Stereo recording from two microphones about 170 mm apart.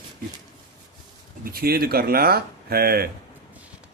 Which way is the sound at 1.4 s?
60° right (ahead or behind).